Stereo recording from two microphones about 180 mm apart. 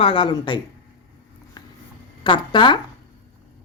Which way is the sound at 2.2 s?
25° left (ahead or behind).